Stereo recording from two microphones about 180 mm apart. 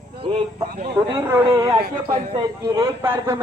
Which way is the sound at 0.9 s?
10° right (ahead or behind).